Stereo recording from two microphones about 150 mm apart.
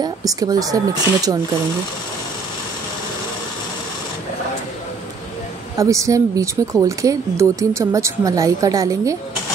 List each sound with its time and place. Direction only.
0.0 s speech: 25° right (ahead or behind)
5.8 s speech: 20° right (ahead or behind)